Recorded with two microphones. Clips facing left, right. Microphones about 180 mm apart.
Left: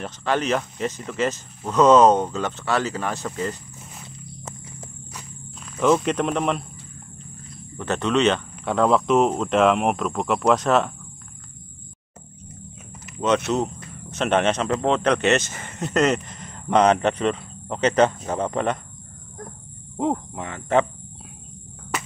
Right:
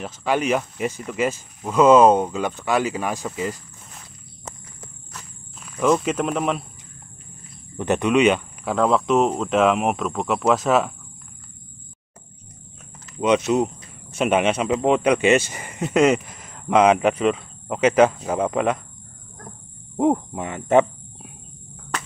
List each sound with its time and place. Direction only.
0.0 s speech: 10° right (ahead or behind)
5.6 s speech: centre (ahead or behind)
7.7 s speech: 15° right (ahead or behind)
8.7 s speech: centre (ahead or behind)
13.5 s speech: 10° right (ahead or behind)
20.0 s speech: 15° right (ahead or behind)